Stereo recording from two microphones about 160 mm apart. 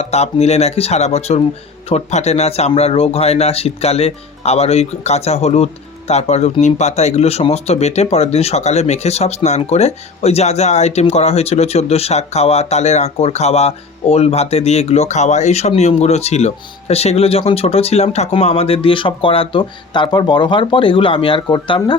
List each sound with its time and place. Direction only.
0.0 s speech: 40° left (ahead or behind)